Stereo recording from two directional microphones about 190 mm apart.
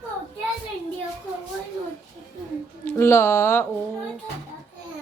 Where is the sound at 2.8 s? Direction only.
15° left (ahead or behind).